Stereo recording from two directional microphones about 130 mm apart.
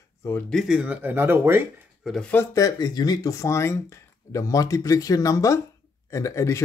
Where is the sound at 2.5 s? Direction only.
30° left (ahead or behind).